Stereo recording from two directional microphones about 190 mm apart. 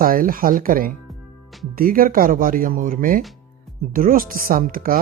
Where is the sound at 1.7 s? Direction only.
50° right (ahead or behind).